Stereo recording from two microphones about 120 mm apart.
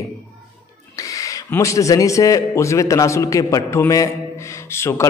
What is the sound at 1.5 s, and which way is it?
A man's voice, 25° left (ahead or behind).